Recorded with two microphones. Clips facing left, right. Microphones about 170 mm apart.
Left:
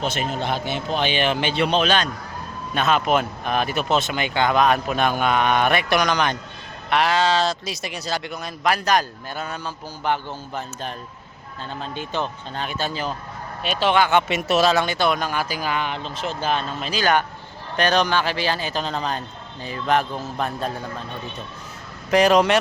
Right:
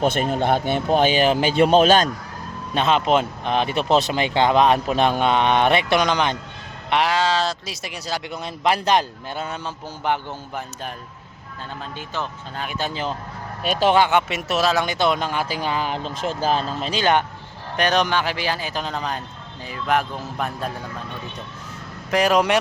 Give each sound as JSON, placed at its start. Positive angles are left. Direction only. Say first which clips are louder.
{"t": 0.0, "sound": "speech", "louder": "right 5 dB", "side_deg": -55}
{"t": 2.7, "sound": "speech", "louder": "right 1 dB", "side_deg": -25}
{"t": 6.9, "sound": "speech", "louder": "left 1 dB", "side_deg": -15}
{"t": 8.3, "sound": "speech", "louder": "right 3 dB", "side_deg": -25}
{"t": 12.5, "sound": "speech", "louder": "even", "side_deg": -15}
{"t": 13.6, "sound": "speech", "louder": "right 2 dB", "side_deg": -45}
{"t": 14.1, "sound": "speech", "louder": "left 2 dB", "side_deg": -5}
{"t": 14.8, "sound": "speech", "louder": "right 1 dB", "side_deg": -20}
{"t": 22.1, "sound": "speech", "louder": "left 2 dB", "side_deg": -5}